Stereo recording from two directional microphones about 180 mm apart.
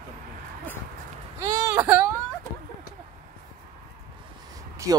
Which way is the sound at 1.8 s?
10° right (ahead or behind).